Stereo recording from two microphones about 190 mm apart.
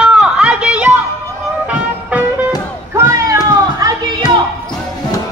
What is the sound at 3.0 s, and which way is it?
Cat, 15° right (ahead or behind).